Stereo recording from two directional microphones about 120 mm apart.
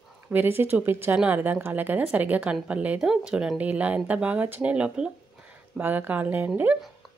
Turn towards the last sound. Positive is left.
turn(degrees=-15)  # may be behind; listen again after turning